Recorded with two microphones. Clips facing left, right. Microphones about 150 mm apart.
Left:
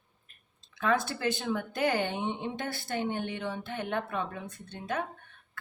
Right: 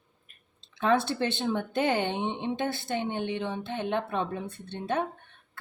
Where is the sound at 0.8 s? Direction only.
25° right (ahead or behind).